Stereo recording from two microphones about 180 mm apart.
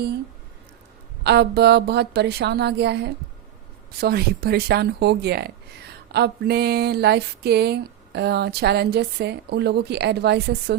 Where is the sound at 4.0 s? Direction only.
60° right (ahead or behind).